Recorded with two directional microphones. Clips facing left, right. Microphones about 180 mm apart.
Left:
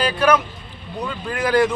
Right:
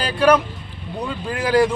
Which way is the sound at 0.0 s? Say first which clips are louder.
Right 2 dB; 30° right (ahead or behind).